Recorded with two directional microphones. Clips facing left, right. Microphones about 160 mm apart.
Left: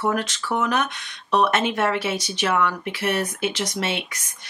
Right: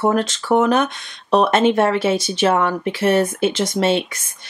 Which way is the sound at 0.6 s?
30° right (ahead or behind).